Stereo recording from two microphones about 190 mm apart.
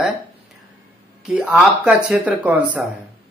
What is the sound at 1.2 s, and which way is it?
Speech, 5° right (ahead or behind).